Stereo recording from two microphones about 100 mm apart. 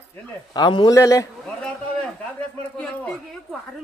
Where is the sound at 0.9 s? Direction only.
30° left (ahead or behind).